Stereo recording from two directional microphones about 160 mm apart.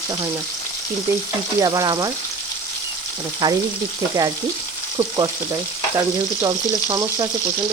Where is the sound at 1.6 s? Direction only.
25° right (ahead or behind).